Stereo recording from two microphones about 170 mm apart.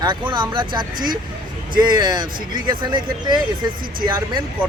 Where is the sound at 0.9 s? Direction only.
55° right (ahead or behind).